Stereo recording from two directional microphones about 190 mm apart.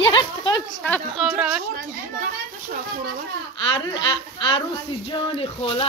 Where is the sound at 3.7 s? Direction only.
25° left (ahead or behind).